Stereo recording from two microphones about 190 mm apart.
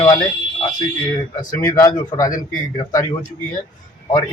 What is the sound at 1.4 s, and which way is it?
A man's voice, 20° left (ahead or behind).